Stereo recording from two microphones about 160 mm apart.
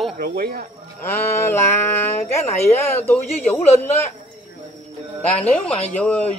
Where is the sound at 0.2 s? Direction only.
70° right (ahead or behind).